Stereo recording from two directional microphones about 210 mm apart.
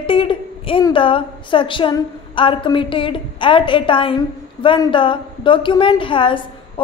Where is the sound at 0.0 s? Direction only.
25° left (ahead or behind).